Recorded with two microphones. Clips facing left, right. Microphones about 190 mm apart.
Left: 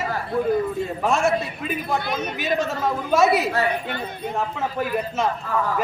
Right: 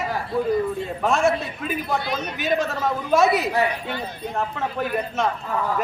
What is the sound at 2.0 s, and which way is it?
Speech, 55° left (ahead or behind).